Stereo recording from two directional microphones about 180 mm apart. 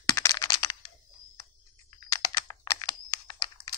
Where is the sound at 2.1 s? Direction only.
20° left (ahead or behind).